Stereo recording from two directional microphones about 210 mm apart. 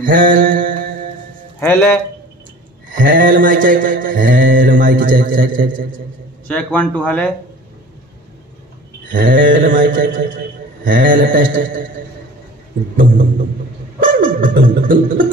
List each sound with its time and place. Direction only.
0.0 s mantra: 40° right (ahead or behind)
1.6 s speech: 10° left (ahead or behind)
2.9 s mantra: 40° right (ahead or behind)
6.4 s speech: 5° left (ahead or behind)
9.1 s mantra: 40° right (ahead or behind)
12.9 s mantra: 40° right (ahead or behind)
13.9 s music: 40° right (ahead or behind)